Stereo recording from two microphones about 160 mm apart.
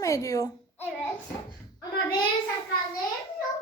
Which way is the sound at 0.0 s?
20° left (ahead or behind).